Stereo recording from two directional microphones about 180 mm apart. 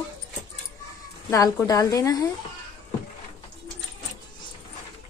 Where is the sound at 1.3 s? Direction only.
20° left (ahead or behind).